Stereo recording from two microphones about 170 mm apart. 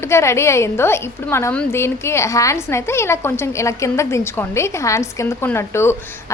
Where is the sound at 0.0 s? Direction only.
15° left (ahead or behind).